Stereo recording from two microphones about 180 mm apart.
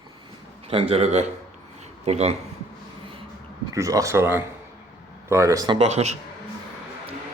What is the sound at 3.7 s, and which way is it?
Speech, 20° right (ahead or behind).